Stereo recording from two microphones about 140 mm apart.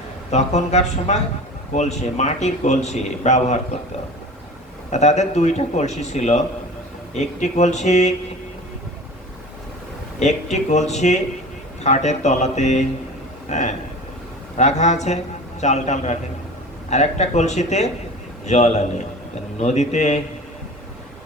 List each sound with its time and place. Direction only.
0.3 s a man's voice: 55° left (ahead or behind)
4.9 s a man's voice: 55° left (ahead or behind)
10.2 s a man's voice: 55° left (ahead or behind)